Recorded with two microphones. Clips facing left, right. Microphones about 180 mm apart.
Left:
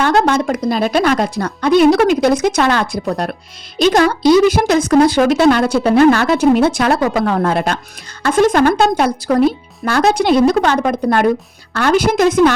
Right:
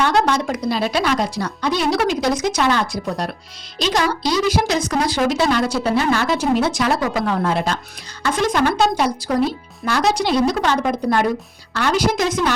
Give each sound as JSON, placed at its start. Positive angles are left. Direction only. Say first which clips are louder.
{"t": 0.0, "sound": "a woman's voice", "louder": "left 4 dB", "side_deg": 50}